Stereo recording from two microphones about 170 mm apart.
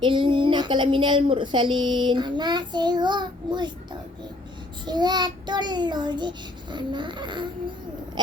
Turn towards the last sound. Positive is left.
turn(degrees=-25)  # may be behind; listen again after turning